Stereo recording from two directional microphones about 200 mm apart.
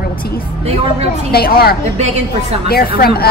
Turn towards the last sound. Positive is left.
turn(degrees=50)  # may be behind; listen again after turning